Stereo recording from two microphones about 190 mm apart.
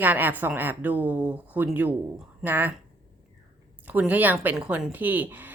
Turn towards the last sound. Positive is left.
turn(degrees=-10)  # may be behind; listen again after turning